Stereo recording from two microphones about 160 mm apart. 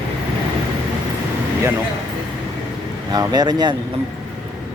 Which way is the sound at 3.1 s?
25° right (ahead or behind).